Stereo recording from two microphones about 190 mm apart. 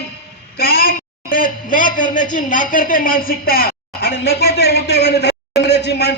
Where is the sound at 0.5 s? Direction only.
50° left (ahead or behind).